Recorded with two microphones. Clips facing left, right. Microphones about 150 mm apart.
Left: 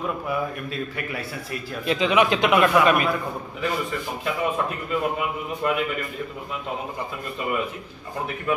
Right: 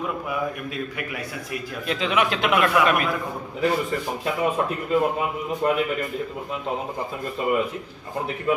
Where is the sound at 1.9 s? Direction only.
Centre (ahead or behind).